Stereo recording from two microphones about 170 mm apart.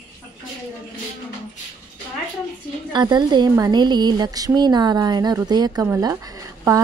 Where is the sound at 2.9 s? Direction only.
25° right (ahead or behind).